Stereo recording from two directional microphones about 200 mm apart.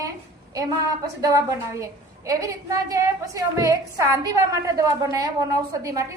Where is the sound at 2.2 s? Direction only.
15° right (ahead or behind).